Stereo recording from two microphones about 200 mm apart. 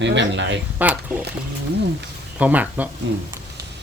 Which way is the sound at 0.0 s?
65° right (ahead or behind).